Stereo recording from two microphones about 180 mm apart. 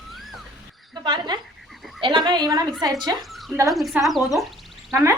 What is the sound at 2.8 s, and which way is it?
Speech, 20° right (ahead or behind).